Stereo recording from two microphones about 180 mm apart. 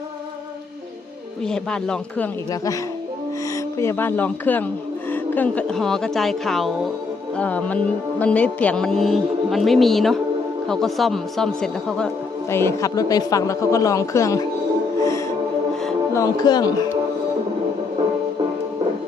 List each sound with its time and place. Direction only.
1.5 s speech: 5° left (ahead or behind)
3.8 s a man's voice: 15° left (ahead or behind)
12.5 s a man's voice: 15° left (ahead or behind)
15.7 s music: centre (ahead or behind)
16.1 s speech: 20° left (ahead or behind)